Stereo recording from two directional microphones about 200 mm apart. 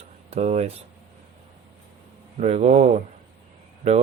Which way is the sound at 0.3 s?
35° right (ahead or behind).